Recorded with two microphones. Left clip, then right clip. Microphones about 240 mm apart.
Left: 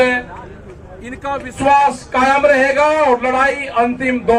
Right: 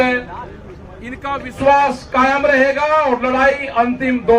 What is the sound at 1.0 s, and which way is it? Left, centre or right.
Speech, centre.